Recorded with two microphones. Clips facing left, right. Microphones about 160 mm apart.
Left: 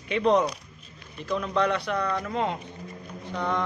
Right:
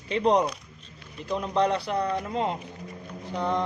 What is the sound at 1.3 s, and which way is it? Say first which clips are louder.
Speech: right 1 dB; 30° right (ahead or behind).